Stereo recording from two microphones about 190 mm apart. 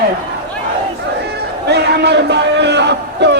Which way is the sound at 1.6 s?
60° right (ahead or behind).